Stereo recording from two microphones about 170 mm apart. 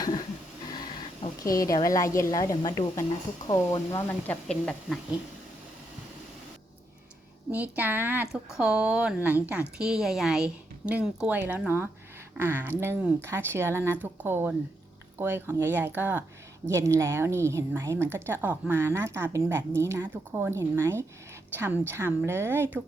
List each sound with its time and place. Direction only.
0.0 s a sound: 25° left (ahead or behind)
1.5 s a woman's voice: 20° left (ahead or behind)
4.4 s speech: 5° left (ahead or behind)
7.5 s speech: 10° right (ahead or behind)